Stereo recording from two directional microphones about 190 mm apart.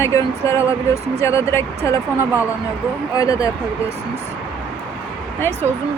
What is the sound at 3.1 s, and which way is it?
Speech, 15° left (ahead or behind).